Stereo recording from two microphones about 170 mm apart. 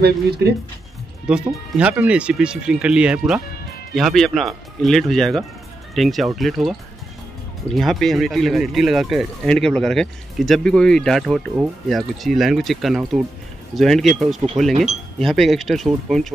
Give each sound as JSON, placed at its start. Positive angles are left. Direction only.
{"t": 0.0, "sound": "speech", "side_deg": -70}
{"t": 1.2, "sound": "speech", "side_deg": -5}